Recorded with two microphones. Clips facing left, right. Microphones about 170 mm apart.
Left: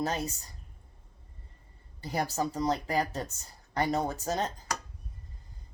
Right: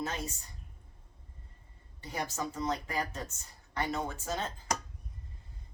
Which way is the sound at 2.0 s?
35° left (ahead or behind).